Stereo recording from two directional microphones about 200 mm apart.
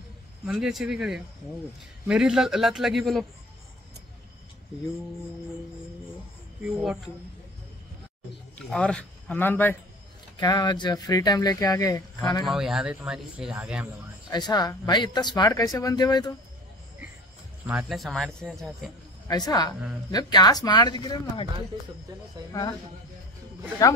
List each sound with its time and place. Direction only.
0.5 s speech: centre (ahead or behind)
6.6 s speech: 5° right (ahead or behind)
8.5 s speech: 5° left (ahead or behind)
10.3 s speech: 20° left (ahead or behind)
12.4 s speech: centre (ahead or behind)
14.3 s speech: 20° left (ahead or behind)
17.6 s speech: centre (ahead or behind)
19.2 s speech: 20° left (ahead or behind)